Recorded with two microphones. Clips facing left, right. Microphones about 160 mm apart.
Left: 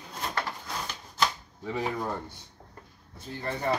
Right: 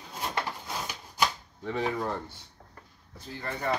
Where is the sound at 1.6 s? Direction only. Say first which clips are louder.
Right 1 dB; 5° left (ahead or behind).